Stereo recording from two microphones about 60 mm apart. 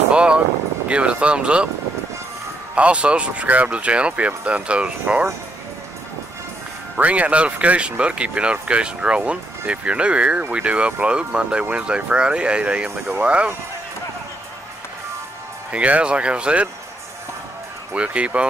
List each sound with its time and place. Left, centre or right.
0.1 s vehicle: centre
0.8 s speech: centre
2.7 s speech: centre
7.0 s speech: right
15.7 s speech: right
17.9 s speech: centre